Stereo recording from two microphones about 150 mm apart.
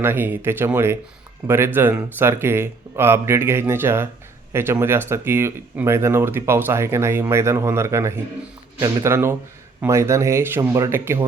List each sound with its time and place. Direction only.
0.0 s speech: 15° right (ahead or behind)